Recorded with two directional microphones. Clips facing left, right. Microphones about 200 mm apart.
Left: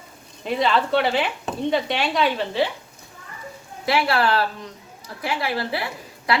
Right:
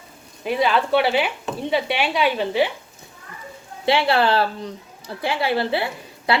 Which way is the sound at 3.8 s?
25° right (ahead or behind).